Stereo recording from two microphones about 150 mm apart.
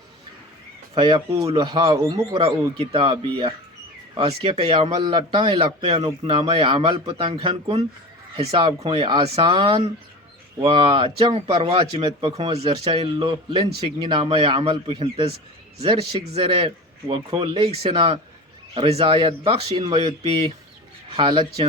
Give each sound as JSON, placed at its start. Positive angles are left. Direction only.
{"t": 0.9, "sound": "a man's voice", "side_deg": -30}
{"t": 15.9, "sound": "a man's voice", "side_deg": -30}